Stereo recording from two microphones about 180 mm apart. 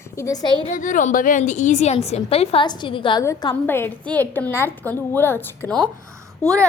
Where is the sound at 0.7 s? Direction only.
45° left (ahead or behind).